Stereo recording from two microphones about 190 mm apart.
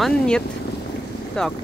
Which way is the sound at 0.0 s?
5° left (ahead or behind).